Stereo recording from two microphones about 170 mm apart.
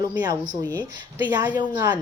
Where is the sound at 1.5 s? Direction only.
25° right (ahead or behind).